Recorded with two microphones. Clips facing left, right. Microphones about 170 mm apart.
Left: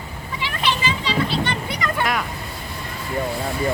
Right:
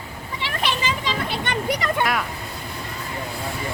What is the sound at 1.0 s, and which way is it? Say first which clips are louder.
Children playing: left 4 dB; 50° right (ahead or behind).